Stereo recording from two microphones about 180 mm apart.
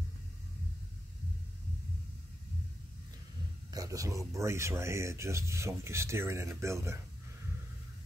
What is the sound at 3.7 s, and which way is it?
Speech, 20° right (ahead or behind).